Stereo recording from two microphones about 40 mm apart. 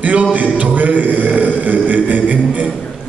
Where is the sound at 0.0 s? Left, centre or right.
Right.